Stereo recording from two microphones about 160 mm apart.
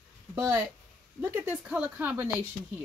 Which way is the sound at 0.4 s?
20° right (ahead or behind).